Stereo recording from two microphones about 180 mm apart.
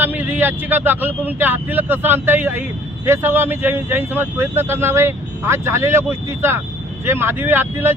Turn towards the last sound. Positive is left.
turn(degrees=-10)  # may be behind; listen again after turning